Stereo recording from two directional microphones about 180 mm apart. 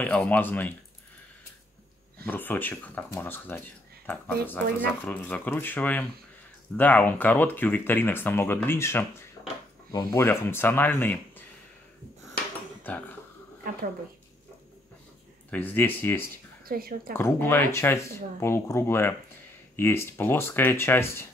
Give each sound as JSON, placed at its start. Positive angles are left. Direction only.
{"t": 0.0, "sound": "speech", "side_deg": 5}
{"t": 2.2, "sound": "speech", "side_deg": 10}
{"t": 15.5, "sound": "speech", "side_deg": 10}
{"t": 16.6, "sound": "a woman's voice", "side_deg": -55}
{"t": 17.1, "sound": "speech", "side_deg": 10}